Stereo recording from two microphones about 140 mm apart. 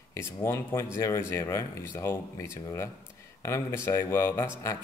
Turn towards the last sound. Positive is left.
turn(degrees=20)  # may be behind; listen again after turning